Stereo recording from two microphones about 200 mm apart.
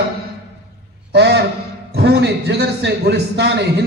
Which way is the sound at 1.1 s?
55° right (ahead or behind).